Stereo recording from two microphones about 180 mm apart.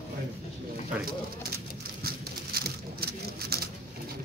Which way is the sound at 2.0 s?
60° right (ahead or behind).